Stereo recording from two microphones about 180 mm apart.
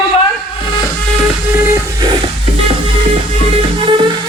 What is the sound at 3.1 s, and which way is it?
Music, 30° right (ahead or behind).